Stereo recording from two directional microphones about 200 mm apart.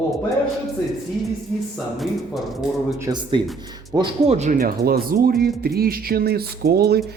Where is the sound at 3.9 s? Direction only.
30° right (ahead or behind); by 7.0 s 50° right (ahead or behind).